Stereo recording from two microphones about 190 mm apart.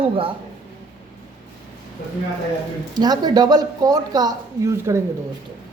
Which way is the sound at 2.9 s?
20° right (ahead or behind).